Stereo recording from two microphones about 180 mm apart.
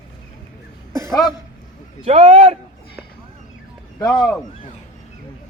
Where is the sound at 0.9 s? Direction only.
15° right (ahead or behind).